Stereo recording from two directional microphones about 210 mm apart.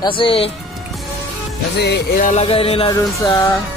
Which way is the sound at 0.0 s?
25° left (ahead or behind).